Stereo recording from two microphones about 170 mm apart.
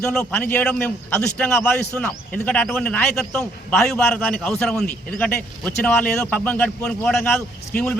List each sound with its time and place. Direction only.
0.0 s a man's voice: 5° left (ahead or behind)